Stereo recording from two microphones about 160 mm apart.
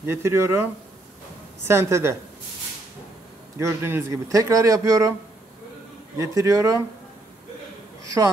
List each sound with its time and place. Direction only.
0.0 s speech: 15° right (ahead or behind)
1.7 s speech: 15° right (ahead or behind)
3.5 s speech: 15° right (ahead or behind)
6.1 s speech: 20° right (ahead or behind)
8.0 s a man's voice: 20° right (ahead or behind)